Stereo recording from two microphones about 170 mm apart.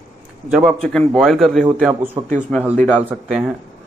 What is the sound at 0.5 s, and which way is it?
A man's voice, 5° right (ahead or behind).